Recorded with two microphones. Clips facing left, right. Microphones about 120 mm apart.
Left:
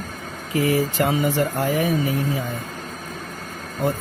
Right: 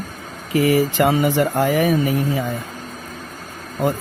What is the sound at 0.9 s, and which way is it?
Speech, 80° right.